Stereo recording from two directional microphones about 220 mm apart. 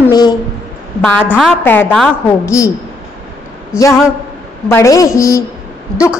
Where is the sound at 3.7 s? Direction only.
5° right (ahead or behind).